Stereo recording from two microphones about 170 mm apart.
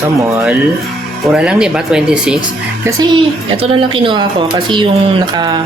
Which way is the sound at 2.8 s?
20° right (ahead or behind).